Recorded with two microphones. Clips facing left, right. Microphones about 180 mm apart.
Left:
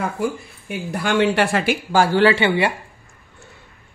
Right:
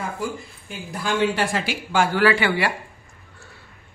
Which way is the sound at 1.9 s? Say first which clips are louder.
Left 3 dB; 30° left (ahead or behind).